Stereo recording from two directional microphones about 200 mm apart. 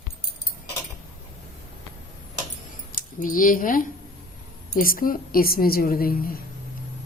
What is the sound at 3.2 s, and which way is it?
A woman's voice, 45° left (ahead or behind).